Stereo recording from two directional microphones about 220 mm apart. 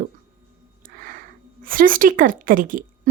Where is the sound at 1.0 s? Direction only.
40° right (ahead or behind).